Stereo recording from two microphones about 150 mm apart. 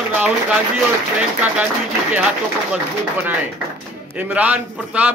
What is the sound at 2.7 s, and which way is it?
A man's voice, 10° right (ahead or behind).